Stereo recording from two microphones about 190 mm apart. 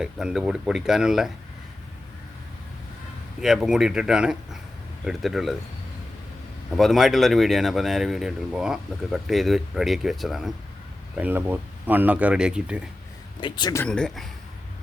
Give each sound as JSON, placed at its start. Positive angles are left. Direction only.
{"t": 0.0, "sound": "speech", "side_deg": -5}
{"t": 3.4, "sound": "speech", "side_deg": -5}
{"t": 6.7, "sound": "speech", "side_deg": 0}
{"t": 13.4, "sound": "speech", "side_deg": 20}
{"t": 13.8, "sound": "speech", "side_deg": 5}